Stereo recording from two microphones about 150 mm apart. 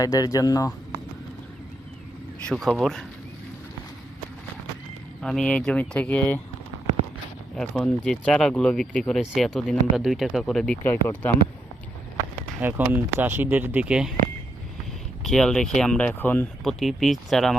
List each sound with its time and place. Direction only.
0.0 s speech: 25° left (ahead or behind)
2.5 s speech: centre (ahead or behind)
5.2 s speech: 5° left (ahead or behind)
7.5 s speech: 5° left (ahead or behind)
12.6 s speech: 15° right (ahead or behind)
15.2 s speech: centre (ahead or behind)
16.6 s speech: centre (ahead or behind)